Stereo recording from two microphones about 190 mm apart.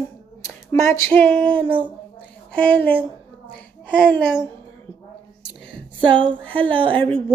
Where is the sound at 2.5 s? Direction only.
5° left (ahead or behind).